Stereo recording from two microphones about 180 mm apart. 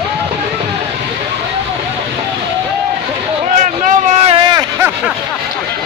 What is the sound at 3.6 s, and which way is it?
Vehicle, 40° right (ahead or behind).